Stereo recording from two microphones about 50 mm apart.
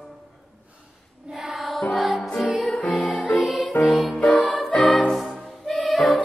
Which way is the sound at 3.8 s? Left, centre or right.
Left.